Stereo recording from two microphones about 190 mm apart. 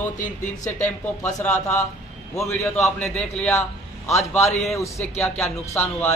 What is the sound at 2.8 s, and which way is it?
Speech, 5° left (ahead or behind).